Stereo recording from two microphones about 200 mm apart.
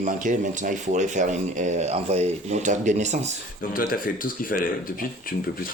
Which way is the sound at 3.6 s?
45° left (ahead or behind).